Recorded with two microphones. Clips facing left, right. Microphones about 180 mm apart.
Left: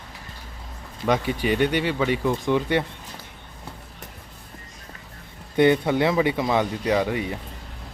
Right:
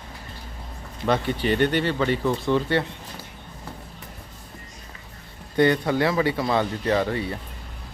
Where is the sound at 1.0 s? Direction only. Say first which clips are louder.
Even; 10° left (ahead or behind).